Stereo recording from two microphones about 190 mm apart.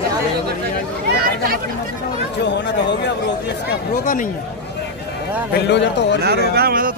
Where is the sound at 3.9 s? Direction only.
45° left (ahead or behind).